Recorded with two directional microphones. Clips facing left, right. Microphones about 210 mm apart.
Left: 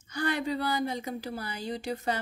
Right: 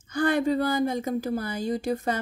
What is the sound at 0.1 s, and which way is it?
A woman's voice, 50° right (ahead or behind).